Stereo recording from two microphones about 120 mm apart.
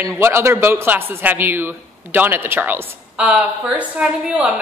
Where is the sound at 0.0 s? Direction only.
20° right (ahead or behind).